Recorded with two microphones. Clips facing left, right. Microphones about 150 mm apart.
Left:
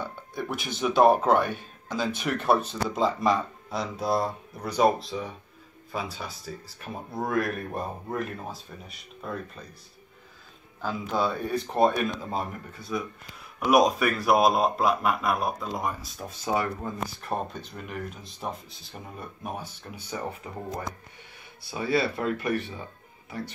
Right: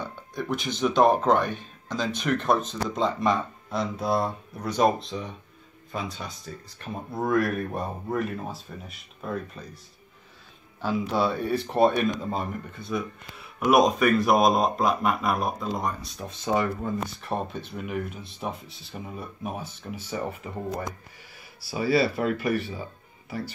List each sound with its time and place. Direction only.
0.0 s a man's voice: 10° left (ahead or behind)
10.8 s a man's voice: 5° right (ahead or behind)
21.5 s a man's voice: 5° right (ahead or behind)